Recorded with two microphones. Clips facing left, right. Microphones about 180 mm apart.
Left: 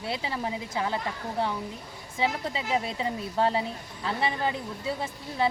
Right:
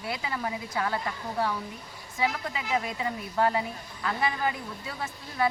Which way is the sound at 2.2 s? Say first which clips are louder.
Left 1 dB; 30° left (ahead or behind).